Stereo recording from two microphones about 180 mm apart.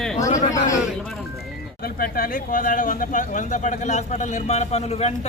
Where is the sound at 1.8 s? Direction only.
55° left (ahead or behind); by 5.1 s 35° left (ahead or behind).